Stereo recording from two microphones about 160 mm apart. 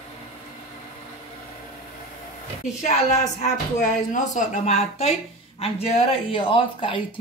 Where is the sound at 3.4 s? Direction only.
50° left (ahead or behind).